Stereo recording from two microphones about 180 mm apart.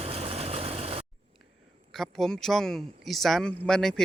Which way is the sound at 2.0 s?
Centre (ahead or behind).